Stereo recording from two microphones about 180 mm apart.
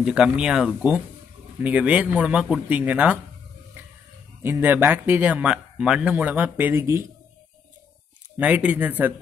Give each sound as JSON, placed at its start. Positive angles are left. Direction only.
{"t": 0.0, "sound": "speech", "side_deg": -5}
{"t": 4.4, "sound": "speech", "side_deg": -10}
{"t": 8.4, "sound": "speech", "side_deg": -10}